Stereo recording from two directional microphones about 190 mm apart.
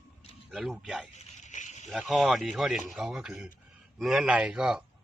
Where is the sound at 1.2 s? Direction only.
40° left (ahead or behind).